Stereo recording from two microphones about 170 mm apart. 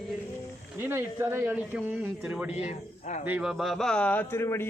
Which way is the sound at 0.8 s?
15° right (ahead or behind).